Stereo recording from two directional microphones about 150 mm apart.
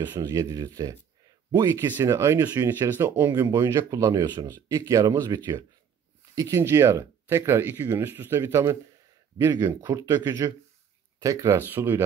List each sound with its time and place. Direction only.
0.0 s speech: 15° right (ahead or behind)